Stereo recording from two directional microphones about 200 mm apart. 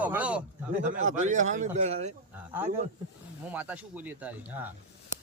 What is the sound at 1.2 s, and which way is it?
Speech, 35° right (ahead or behind).